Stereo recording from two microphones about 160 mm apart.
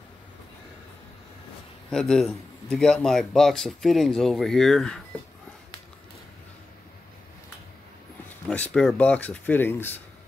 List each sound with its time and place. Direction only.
1.9 s speech: 5° left (ahead or behind)
8.5 s speech: 10° left (ahead or behind)